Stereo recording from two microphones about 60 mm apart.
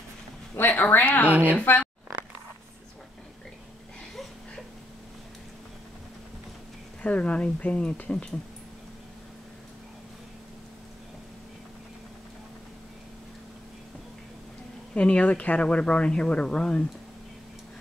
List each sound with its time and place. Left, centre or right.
0.6 s speech: left
1.3 s speech: right
1.6 s speech: left
7.0 s speech: left
15.0 s speech: left